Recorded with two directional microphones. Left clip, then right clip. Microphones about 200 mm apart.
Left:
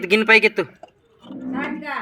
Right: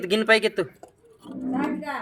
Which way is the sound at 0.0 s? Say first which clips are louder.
Left 6 dB; 15° left (ahead or behind).